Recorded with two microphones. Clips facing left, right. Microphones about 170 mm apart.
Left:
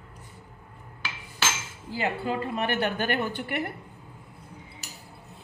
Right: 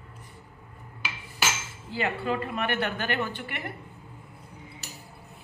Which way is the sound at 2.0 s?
30° left (ahead or behind).